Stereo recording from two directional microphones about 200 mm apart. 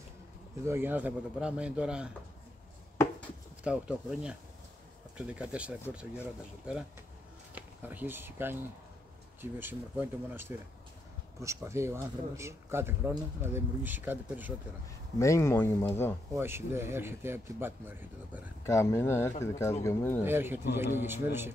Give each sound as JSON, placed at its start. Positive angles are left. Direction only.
{"t": 0.7, "sound": "speech", "side_deg": -10}
{"t": 3.6, "sound": "speech", "side_deg": -5}
{"t": 15.1, "sound": "speech", "side_deg": 15}
{"t": 16.3, "sound": "speech", "side_deg": -10}
{"t": 18.6, "sound": "speech", "side_deg": 15}
{"t": 20.2, "sound": "speech", "side_deg": -10}